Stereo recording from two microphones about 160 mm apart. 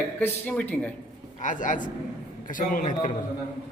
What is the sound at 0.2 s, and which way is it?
Speech, 10° left (ahead or behind).